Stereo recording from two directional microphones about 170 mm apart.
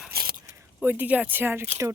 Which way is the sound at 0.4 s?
10° right (ahead or behind).